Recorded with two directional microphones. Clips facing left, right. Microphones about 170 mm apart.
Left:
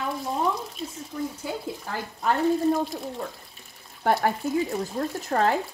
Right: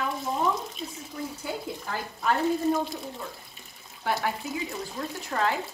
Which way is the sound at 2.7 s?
Centre (ahead or behind).